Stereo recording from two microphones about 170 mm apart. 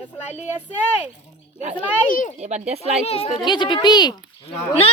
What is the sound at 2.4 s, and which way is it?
Speech, 40° right (ahead or behind).